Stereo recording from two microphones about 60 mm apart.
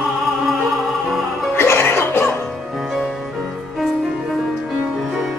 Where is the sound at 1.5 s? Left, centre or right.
Left.